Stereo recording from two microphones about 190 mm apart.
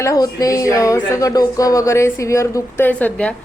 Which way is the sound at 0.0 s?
20° left (ahead or behind).